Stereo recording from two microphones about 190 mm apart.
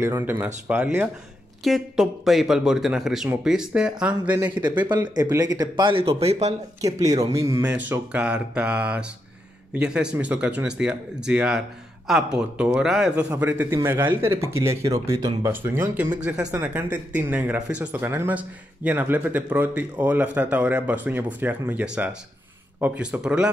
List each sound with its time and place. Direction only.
0.0 s speech: 10° right (ahead or behind)
5.0 s speech: 20° right (ahead or behind)
6.8 s speech: 15° right (ahead or behind)